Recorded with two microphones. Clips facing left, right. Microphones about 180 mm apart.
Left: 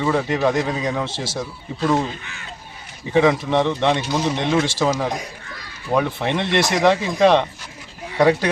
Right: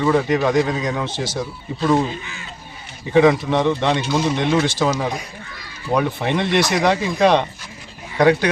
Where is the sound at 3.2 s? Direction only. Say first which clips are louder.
Right 2 dB; 5° right (ahead or behind).